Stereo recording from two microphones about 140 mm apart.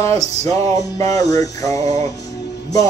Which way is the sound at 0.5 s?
25° left (ahead or behind).